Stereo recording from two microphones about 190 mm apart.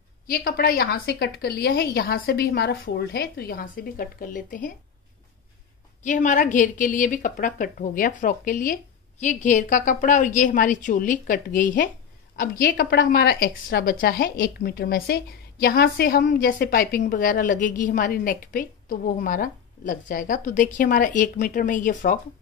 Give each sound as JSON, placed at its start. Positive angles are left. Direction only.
{"t": 0.3, "sound": "a woman's voice", "side_deg": 50}
{"t": 6.0, "sound": "a woman's voice", "side_deg": 40}